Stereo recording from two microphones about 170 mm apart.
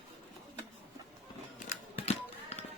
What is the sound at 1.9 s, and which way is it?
Music, 40° left (ahead or behind).